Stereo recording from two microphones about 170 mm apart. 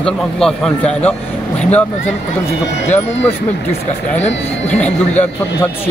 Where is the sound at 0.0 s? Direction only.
5° left (ahead or behind).